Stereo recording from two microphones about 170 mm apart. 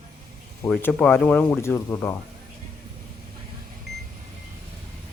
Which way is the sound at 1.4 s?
15° left (ahead or behind).